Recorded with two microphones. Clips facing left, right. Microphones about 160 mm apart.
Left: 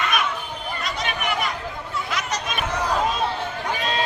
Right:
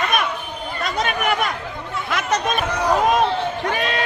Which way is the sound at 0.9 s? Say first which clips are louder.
Right 6 dB; 50° right (ahead or behind).